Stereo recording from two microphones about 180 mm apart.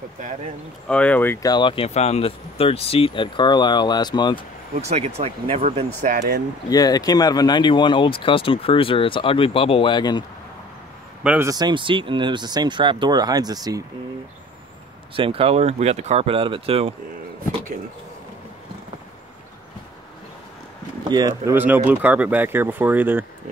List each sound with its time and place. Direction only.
0.8 s speech: 5° left (ahead or behind); by 4.4 s 25° left (ahead or behind)
4.8 s speech: 35° right (ahead or behind)
6.0 s speech: 50° right (ahead or behind)
6.7 s speech: 20° left (ahead or behind)
11.2 s speech: 15° right (ahead or behind)
15.1 s speech: 30° right (ahead or behind)
21.1 s speech: 20° right (ahead or behind)